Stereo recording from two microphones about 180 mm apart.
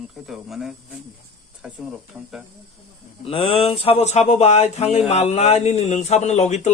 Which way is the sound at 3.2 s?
30° left (ahead or behind).